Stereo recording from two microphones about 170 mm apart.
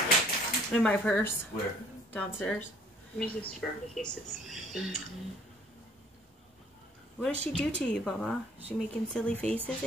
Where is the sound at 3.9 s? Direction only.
5° left (ahead or behind).